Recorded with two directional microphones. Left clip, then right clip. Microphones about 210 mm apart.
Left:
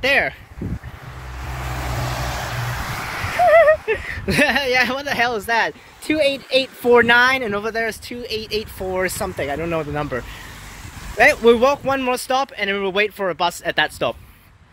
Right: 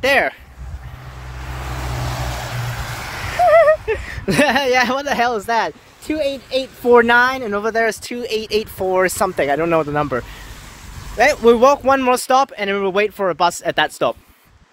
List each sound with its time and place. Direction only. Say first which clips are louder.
0.0 s speech: right 2 dB; 25° right (ahead or behind)
1.4 s vehicle: even; 50° left (ahead or behind)
2.3 s vehicle: left 1 dB; 5° right (ahead or behind)
2.7 s vehicle: left 1 dB; 25° right (ahead or behind)
3.4 s speech: right 1 dB; 10° right (ahead or behind)
6.0 s speech: left 2 dB; centre (ahead or behind)
6.9 s speech: right 1 dB; 15° right (ahead or behind)
7.6 s speech: right 5 dB; 35° right (ahead or behind)
11.1 s speech: even; 10° right (ahead or behind)
11.6 s speech: right 5 dB; 30° right (ahead or behind)